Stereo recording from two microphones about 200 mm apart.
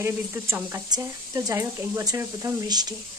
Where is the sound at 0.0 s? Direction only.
10° right (ahead or behind).